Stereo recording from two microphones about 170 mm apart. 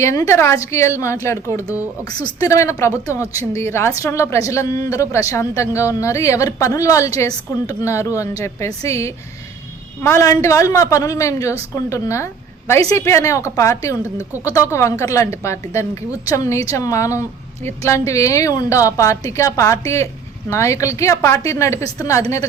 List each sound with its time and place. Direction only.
0.0 s a woman's voice: 15° left (ahead or behind)
14.0 s speech: 10° right (ahead or behind)
14.4 s a woman's voice: 15° left (ahead or behind)